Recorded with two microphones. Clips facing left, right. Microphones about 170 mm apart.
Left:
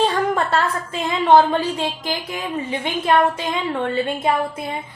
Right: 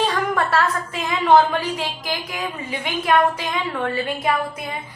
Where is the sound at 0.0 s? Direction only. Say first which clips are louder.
Left 2 dB; 25° left (ahead or behind).